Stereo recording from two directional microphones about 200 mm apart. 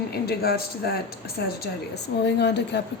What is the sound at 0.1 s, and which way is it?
A woman's voice, 50° left (ahead or behind).